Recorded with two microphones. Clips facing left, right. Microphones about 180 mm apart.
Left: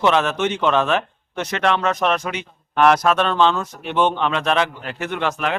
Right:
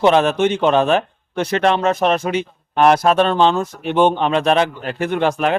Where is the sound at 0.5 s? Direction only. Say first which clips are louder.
Right 4 dB; 40° right (ahead or behind).